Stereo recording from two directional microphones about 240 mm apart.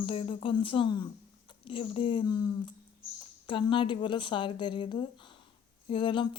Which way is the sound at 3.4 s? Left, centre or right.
Left.